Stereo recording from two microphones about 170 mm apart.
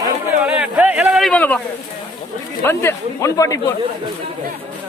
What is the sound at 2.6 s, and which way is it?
Speech, 15° left (ahead or behind).